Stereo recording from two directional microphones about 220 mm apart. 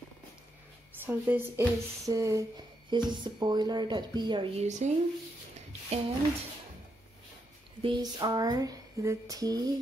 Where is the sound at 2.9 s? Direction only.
20° right (ahead or behind).